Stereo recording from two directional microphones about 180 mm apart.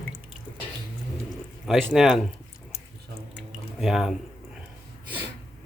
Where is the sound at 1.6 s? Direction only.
Centre (ahead or behind).